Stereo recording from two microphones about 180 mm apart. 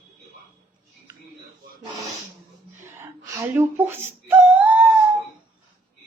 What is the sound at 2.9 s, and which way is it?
Wail, 15° right (ahead or behind).